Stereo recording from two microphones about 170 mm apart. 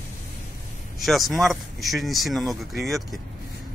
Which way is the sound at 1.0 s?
Centre (ahead or behind).